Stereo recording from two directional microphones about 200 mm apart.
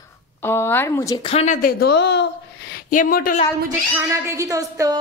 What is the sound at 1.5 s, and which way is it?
Speech, 50° left (ahead or behind).